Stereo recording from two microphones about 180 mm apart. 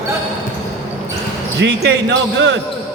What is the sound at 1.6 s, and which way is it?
Speech, 75° right (ahead or behind).